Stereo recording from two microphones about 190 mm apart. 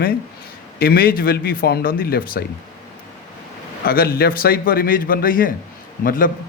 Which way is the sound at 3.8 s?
50° left (ahead or behind).